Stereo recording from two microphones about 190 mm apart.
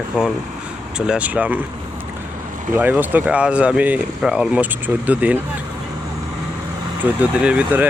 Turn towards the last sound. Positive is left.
turn(degrees=-5)  # may be behind; listen again after turning